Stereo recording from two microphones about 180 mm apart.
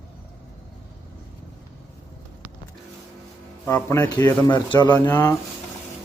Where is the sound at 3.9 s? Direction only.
20° left (ahead or behind).